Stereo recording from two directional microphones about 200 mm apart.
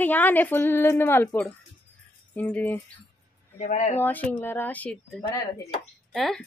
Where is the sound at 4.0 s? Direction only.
10° left (ahead or behind).